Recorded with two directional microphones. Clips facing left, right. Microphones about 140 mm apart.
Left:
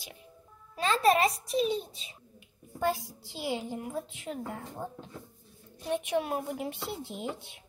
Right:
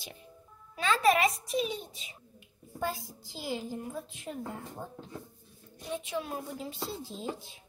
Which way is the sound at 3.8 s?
80° left.